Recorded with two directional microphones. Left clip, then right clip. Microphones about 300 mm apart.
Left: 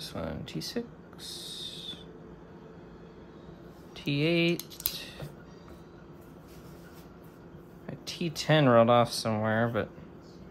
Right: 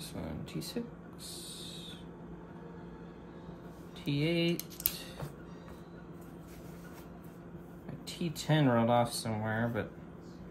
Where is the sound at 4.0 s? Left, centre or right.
Left.